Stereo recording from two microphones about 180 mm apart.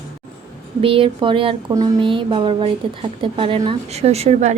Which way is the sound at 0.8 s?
30° right (ahead or behind).